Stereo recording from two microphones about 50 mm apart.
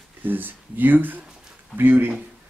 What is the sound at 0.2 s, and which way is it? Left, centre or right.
Speech, right.